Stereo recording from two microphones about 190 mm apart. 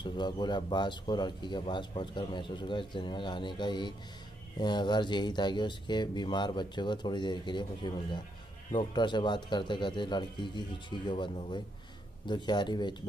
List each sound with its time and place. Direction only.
0.0 s speech: 25° left (ahead or behind)